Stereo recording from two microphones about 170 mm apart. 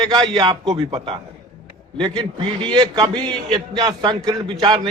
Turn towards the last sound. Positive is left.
turn(degrees=-25)  # may be behind; listen again after turning